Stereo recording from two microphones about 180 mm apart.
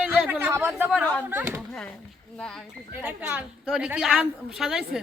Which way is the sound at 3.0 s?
10° right (ahead or behind).